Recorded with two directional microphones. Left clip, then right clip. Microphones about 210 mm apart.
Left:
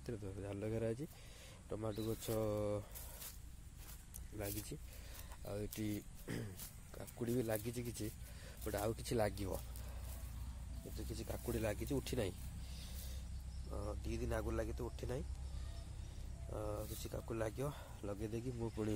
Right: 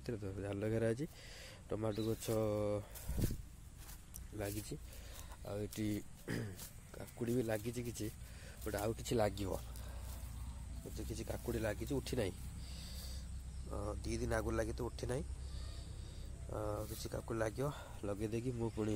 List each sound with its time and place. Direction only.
0.0 s speech: 10° right (ahead or behind)
4.4 s speech: centre (ahead or behind)
5.9 s speech: 15° right (ahead or behind)
6.6 s speech: centre (ahead or behind)
11.0 s speech: 10° right (ahead or behind)
13.7 s speech: 15° right (ahead or behind)
16.5 s speech: 10° right (ahead or behind)